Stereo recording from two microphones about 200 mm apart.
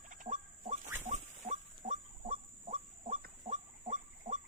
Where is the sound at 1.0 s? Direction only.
35° right (ahead or behind).